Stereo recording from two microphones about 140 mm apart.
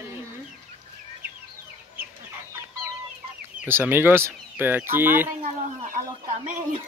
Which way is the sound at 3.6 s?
15° right (ahead or behind).